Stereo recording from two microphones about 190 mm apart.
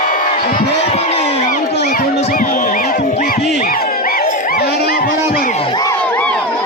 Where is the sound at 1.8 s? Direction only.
40° left (ahead or behind).